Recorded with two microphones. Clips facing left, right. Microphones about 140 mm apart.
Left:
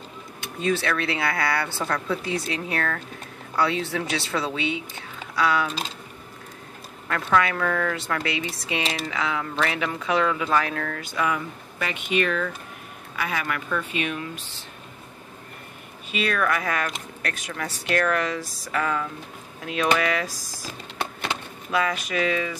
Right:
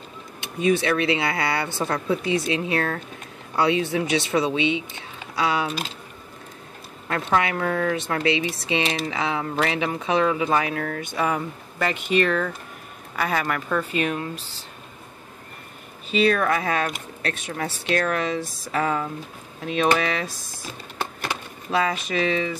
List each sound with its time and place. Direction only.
0.4 s speech: 15° right (ahead or behind)
7.1 s speech: 25° right (ahead or behind)
16.1 s speech: 30° right (ahead or behind)